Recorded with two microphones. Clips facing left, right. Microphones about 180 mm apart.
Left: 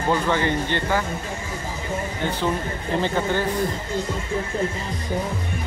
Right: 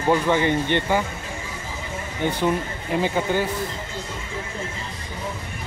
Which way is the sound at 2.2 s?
10° right (ahead or behind).